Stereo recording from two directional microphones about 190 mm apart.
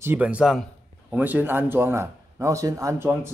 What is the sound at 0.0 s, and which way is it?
Speech, 10° right (ahead or behind).